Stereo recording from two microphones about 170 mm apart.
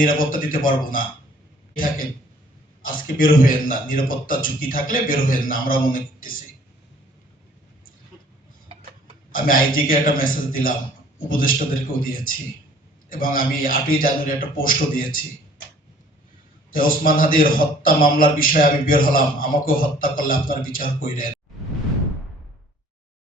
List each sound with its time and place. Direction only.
0.0 s a man's voice: 55° left (ahead or behind)
9.3 s a man's voice: 55° left (ahead or behind)
16.7 s a man's voice: 55° left (ahead or behind)